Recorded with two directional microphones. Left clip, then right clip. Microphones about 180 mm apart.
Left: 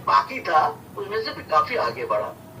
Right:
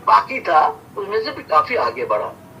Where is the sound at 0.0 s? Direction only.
50° right (ahead or behind).